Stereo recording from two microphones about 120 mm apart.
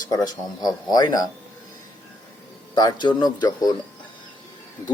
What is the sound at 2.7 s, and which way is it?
Speech, 35° left (ahead or behind).